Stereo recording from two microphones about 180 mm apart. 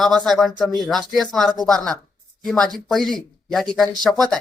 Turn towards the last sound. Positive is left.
turn(degrees=0)  # may be behind; listen again after turning